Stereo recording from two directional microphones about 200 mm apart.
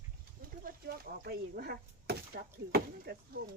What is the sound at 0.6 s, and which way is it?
Chop, 50° right (ahead or behind).